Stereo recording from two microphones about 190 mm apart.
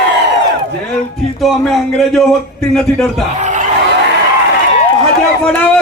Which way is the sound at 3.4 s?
40° right (ahead or behind).